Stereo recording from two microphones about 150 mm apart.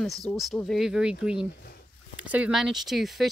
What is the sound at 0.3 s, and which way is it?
Speech, centre (ahead or behind).